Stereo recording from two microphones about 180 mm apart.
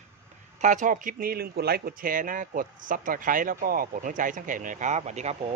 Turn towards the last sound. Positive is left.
turn(degrees=-40)  # may be behind; listen again after turning